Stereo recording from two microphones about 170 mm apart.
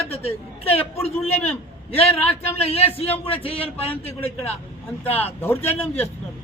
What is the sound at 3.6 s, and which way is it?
Speech, 10° left (ahead or behind).